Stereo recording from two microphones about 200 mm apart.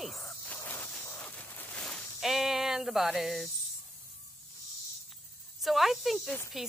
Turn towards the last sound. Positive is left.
turn(degrees=0)  # may be behind; listen again after turning